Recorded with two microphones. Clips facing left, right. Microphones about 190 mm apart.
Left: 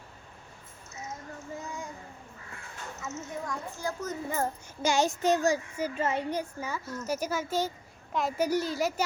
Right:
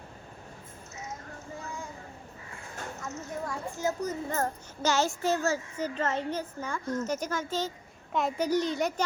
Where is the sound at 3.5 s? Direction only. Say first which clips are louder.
Right 6 dB; 20° right (ahead or behind).